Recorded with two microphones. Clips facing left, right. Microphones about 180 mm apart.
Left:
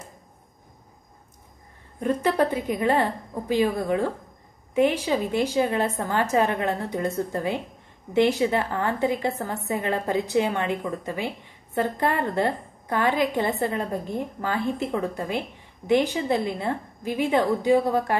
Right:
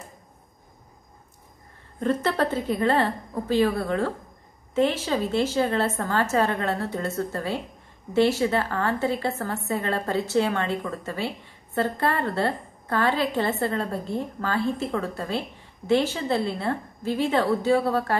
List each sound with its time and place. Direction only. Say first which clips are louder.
2.0 s a woman's voice: left 1 dB; 15° left (ahead or behind)